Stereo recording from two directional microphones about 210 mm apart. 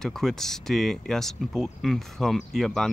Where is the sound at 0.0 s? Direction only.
Centre (ahead or behind).